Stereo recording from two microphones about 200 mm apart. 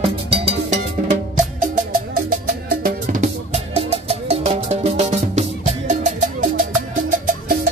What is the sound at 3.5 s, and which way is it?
Music, 30° right (ahead or behind).